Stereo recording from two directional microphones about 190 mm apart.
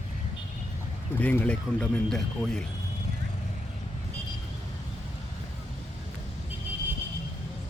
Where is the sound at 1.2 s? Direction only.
10° left (ahead or behind).